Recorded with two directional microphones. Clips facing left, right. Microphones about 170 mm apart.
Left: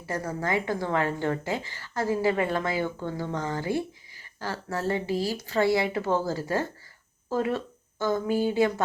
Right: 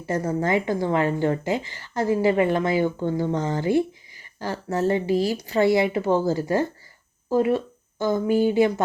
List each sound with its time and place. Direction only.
0.0 s speech: 20° right (ahead or behind)